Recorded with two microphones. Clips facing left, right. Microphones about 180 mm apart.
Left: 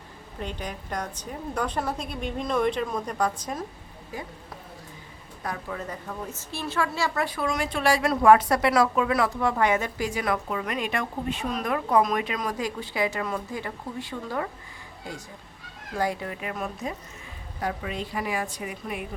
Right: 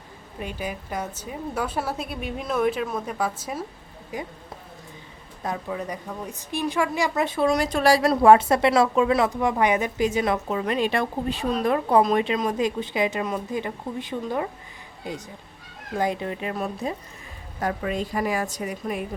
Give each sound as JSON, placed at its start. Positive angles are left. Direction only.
{"t": 0.3, "sound": "a woman's voice", "side_deg": -10}
{"t": 4.1, "sound": "a woman's voice", "side_deg": -15}
{"t": 5.4, "sound": "a woman's voice", "side_deg": -20}
{"t": 7.4, "sound": "a woman's voice", "side_deg": -35}
{"t": 17.6, "sound": "a woman's voice", "side_deg": -50}